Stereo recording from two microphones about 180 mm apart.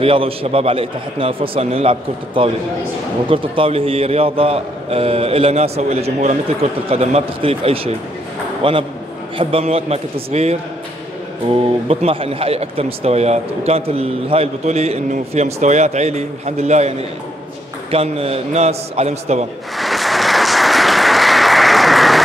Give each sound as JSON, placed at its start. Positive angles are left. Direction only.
{"t": 0.0, "sound": "a man's voice", "side_deg": -30}
{"t": 17.9, "sound": "speech", "side_deg": -35}
{"t": 19.8, "sound": "applause", "side_deg": 0}